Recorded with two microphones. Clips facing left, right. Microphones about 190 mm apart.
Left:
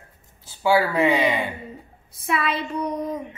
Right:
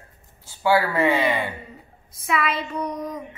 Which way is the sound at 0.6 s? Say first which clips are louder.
Left 1 dB; 15° left (ahead or behind).